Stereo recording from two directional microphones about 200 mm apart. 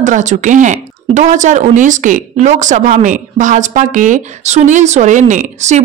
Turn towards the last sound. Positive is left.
turn(degrees=-35)  # may be behind; listen again after turning